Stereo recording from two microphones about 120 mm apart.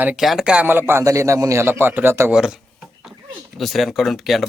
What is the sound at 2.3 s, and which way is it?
Dishes, 5° right (ahead or behind).